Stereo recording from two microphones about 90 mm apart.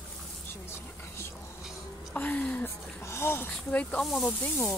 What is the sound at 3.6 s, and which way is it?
Speech, 15° left (ahead or behind).